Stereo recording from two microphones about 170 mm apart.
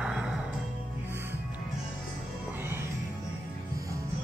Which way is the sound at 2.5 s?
15° right (ahead or behind).